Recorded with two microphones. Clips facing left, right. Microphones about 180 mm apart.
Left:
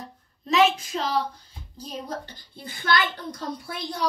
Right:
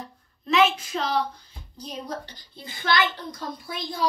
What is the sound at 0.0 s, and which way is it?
Child singing, 40° left (ahead or behind).